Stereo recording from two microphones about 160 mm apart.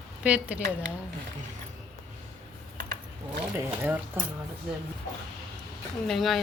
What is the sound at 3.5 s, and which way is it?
Speech, 15° right (ahead or behind).